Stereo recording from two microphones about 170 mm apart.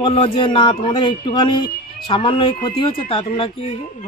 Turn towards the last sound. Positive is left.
turn(degrees=30)  # may be behind; listen again after turning